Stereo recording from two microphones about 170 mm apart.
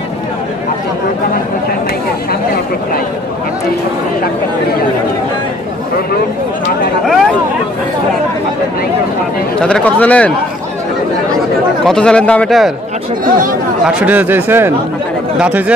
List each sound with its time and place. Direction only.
9.6 s speech: 5° left (ahead or behind)
11.8 s speech: 5° left (ahead or behind)
13.2 s speech: 55° right (ahead or behind)
13.8 s speech: 5° right (ahead or behind)